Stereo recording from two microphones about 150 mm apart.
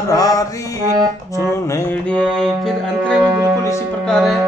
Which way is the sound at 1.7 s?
10° left (ahead or behind).